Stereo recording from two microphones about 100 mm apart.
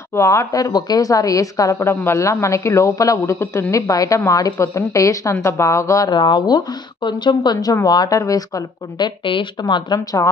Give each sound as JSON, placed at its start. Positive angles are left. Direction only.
{"t": 0.1, "sound": "speech", "side_deg": 30}
{"t": 0.7, "sound": "a woman's voice", "side_deg": 45}
{"t": 6.1, "sound": "a woman's voice", "side_deg": 50}
{"t": 7.5, "sound": "a woman's voice", "side_deg": 35}